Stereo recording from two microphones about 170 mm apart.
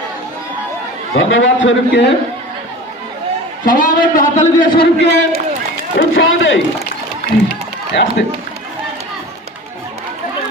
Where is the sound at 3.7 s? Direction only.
50° left (ahead or behind).